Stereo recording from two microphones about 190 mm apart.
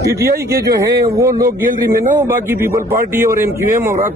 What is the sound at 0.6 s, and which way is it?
Speech, 20° right (ahead or behind).